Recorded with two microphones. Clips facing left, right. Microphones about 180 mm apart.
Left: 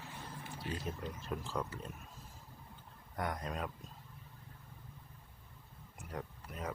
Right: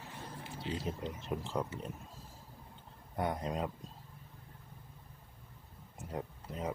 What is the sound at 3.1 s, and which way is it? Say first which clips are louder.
Speech: right 4 dB; 20° right (ahead or behind).